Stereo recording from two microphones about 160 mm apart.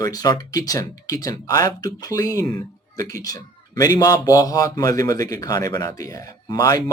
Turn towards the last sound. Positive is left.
turn(degrees=25)  # may be behind; listen again after turning